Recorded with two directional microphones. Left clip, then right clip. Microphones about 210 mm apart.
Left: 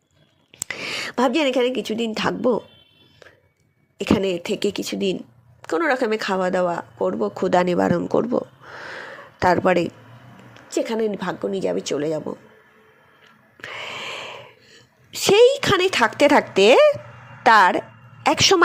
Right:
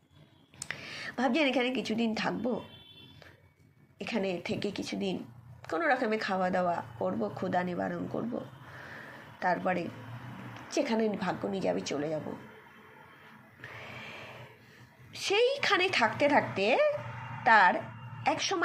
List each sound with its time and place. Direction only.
0.6 s a woman's voice: 55° left (ahead or behind)
3.9 s speech: 50° left (ahead or behind)
9.4 s speech: 55° left (ahead or behind)
13.6 s a sound: 60° left (ahead or behind)
15.1 s a woman's voice: 45° left (ahead or behind)